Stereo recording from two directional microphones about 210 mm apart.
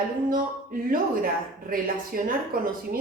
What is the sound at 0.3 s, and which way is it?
Speech, 40° right (ahead or behind).